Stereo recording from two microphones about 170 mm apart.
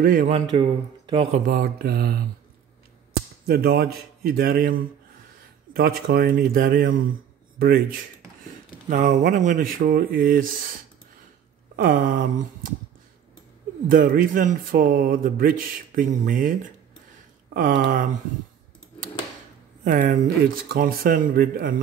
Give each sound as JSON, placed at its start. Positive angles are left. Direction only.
{"t": 0.0, "sound": "speech", "side_deg": -55}
{"t": 0.3, "sound": "speech", "side_deg": -30}
{"t": 1.5, "sound": "speech", "side_deg": -60}
{"t": 3.4, "sound": "speech", "side_deg": -65}
{"t": 8.8, "sound": "speech", "side_deg": -50}
{"t": 13.8, "sound": "speech", "side_deg": -55}
{"t": 19.8, "sound": "speech", "side_deg": -50}